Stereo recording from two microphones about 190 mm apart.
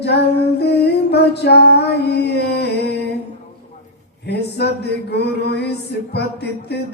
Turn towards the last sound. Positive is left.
turn(degrees=60)  # may be behind; listen again after turning